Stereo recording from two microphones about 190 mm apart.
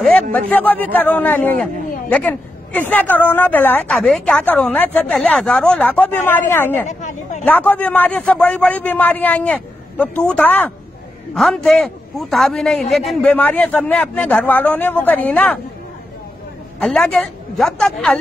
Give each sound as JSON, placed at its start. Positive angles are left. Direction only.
{"t": 0.0, "sound": "a woman's voice", "side_deg": 10}
{"t": 6.9, "sound": "a sound", "side_deg": 40}
{"t": 7.4, "sound": "a woman's voice", "side_deg": 10}
{"t": 16.8, "sound": "a man's voice", "side_deg": 5}